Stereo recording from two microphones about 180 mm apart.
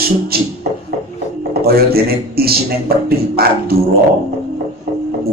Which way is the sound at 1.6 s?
60° right (ahead or behind).